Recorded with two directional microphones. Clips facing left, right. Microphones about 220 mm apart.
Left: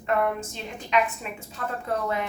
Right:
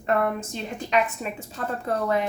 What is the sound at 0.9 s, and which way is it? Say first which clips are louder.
Speech: right 1 dB; 40° right (ahead or behind).